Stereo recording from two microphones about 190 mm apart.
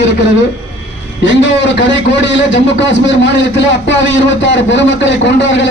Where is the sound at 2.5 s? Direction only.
70° left (ahead or behind).